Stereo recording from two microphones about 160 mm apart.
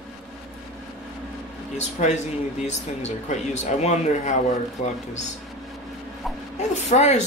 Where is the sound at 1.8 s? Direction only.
45° left (ahead or behind).